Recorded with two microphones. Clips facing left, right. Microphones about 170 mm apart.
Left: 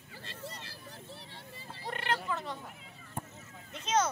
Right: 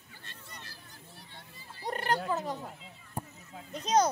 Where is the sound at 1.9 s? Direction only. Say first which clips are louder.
Right 4 dB; 40° right (ahead or behind).